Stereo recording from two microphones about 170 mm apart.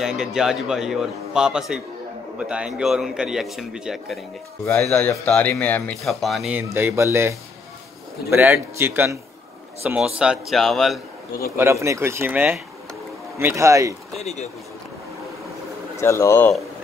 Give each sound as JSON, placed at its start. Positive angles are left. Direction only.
{"t": 0.0, "sound": "a man's voice", "side_deg": -5}
{"t": 4.6, "sound": "speech", "side_deg": 15}
{"t": 6.7, "sound": "a man's voice", "side_deg": -15}
{"t": 11.5, "sound": "speech", "side_deg": -15}
{"t": 14.2, "sound": "speech", "side_deg": 40}
{"t": 16.0, "sound": "speech", "side_deg": 15}